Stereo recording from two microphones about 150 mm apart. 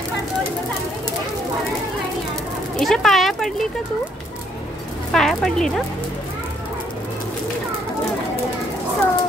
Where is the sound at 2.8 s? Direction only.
Centre (ahead or behind).